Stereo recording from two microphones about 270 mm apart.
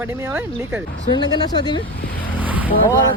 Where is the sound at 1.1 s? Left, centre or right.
Centre.